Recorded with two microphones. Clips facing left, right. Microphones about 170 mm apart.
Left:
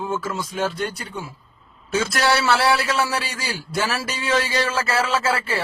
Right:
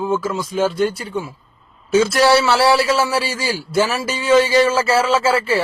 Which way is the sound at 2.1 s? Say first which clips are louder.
Right 3 dB; 25° right (ahead or behind).